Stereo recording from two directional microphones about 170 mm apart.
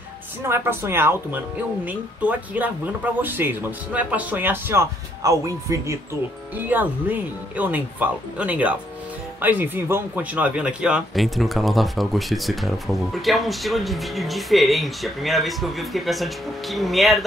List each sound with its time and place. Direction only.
0.5 s speech: 15° right (ahead or behind)